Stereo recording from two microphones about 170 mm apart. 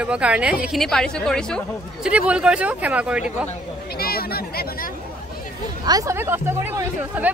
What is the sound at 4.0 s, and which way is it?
Speech, 65° left (ahead or behind).